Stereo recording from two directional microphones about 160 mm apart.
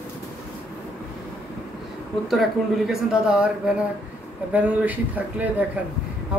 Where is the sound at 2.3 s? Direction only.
Centre (ahead or behind).